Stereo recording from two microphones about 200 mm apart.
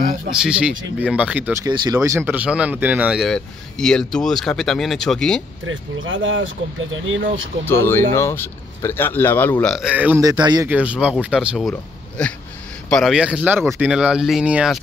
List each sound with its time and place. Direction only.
0.3 s speech: 5° right (ahead or behind)
5.7 s speech: 70° right (ahead or behind)
7.6 s speech: 10° left (ahead or behind); by 10.7 s 20° right (ahead or behind)
10.7 s speech: 5° right (ahead or behind)